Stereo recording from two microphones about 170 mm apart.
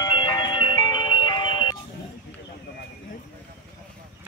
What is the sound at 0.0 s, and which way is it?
Ice cream truck, 25° left (ahead or behind).